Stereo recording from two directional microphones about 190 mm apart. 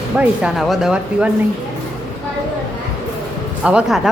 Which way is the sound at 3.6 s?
5° right (ahead or behind).